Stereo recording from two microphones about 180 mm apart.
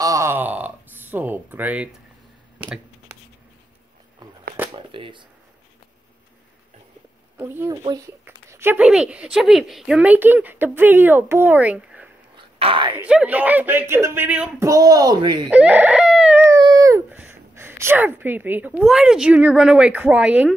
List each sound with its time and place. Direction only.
0.0 s a sound: 15° right (ahead or behind)
4.7 s a sound: 30° right (ahead or behind)
7.3 s speech: 15° right (ahead or behind)
12.4 s whispering: 30° right (ahead or behind)
13.0 s speech: 5° right (ahead or behind); by 15.4 s 25° right (ahead or behind)
15.5 s chicken: 10° right (ahead or behind)